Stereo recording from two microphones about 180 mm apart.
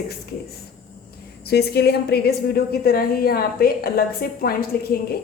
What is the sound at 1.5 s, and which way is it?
A woman's voice, 65° left (ahead or behind).